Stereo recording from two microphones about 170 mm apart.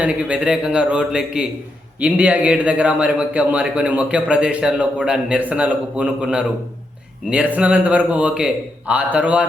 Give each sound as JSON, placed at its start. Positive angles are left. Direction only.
{"t": 0.0, "sound": "a man's voice", "side_deg": -5}